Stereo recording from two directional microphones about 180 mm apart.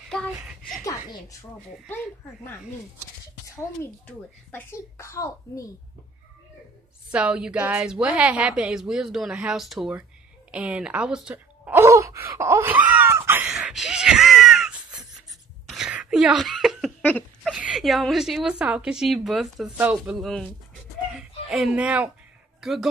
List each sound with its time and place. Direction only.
0.4 s a woman's voice: centre (ahead or behind)
0.8 s a child's voice: 15° left (ahead or behind)
4.5 s a child's voice: 15° left (ahead or behind)
7.1 s a woman's voice: 5° right (ahead or behind)
10.5 s gasp: 5° right (ahead or behind)
15.7 s laughter: 5° right (ahead or behind)
17.4 s a woman's voice: 5° right (ahead or behind)
21.1 s chicken: centre (ahead or behind)
22.6 s speech: centre (ahead or behind)